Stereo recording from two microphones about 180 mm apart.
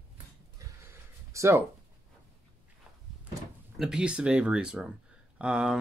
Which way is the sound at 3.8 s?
5° right (ahead or behind).